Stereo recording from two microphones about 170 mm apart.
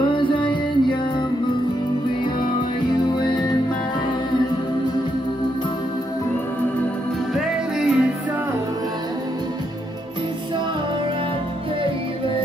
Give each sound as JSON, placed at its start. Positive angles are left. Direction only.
{"t": 0.1, "sound": "music", "side_deg": 30}
{"t": 3.2, "sound": "music", "side_deg": 25}
{"t": 7.3, "sound": "music", "side_deg": -5}